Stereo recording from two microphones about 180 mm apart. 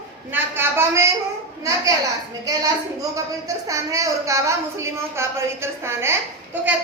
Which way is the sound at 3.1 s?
20° right (ahead or behind).